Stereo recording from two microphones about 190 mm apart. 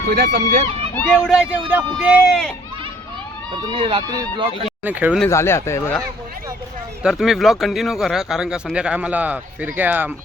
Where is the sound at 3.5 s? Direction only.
25° right (ahead or behind).